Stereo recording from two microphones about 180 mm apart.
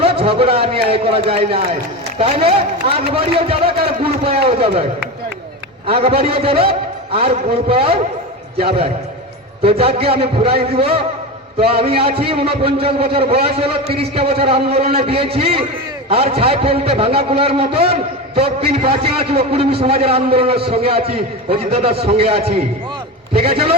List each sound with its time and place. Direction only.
0.0 s a man's voice: 30° right (ahead or behind)
5.8 s a man's voice: 30° right (ahead or behind)
13.8 s a man's voice: 60° right (ahead or behind)
14.2 s a man's voice: 30° right (ahead or behind)
23.4 s a man's voice: 35° right (ahead or behind)